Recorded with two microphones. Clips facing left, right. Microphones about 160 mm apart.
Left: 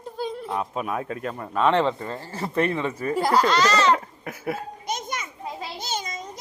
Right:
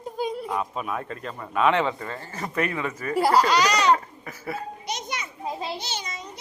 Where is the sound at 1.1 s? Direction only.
55° left (ahead or behind).